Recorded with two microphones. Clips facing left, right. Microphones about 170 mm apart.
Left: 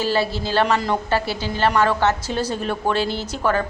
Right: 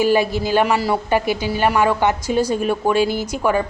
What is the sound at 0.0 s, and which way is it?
A woman's voice, 15° right (ahead or behind).